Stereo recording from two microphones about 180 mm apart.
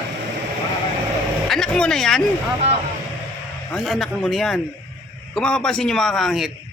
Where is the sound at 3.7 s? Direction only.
Centre (ahead or behind).